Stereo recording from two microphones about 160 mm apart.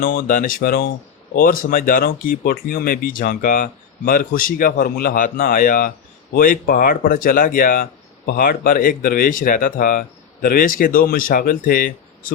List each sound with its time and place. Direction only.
0.0 s speech: 60° left (ahead or behind)